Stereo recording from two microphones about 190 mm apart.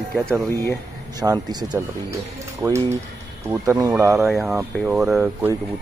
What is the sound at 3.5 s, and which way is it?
Speech, 10° right (ahead or behind).